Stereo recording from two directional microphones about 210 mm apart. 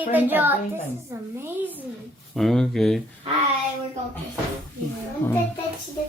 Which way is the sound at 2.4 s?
Centre (ahead or behind).